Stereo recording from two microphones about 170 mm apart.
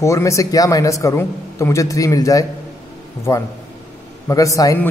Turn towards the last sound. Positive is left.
turn(degrees=20)  # may be behind; listen again after turning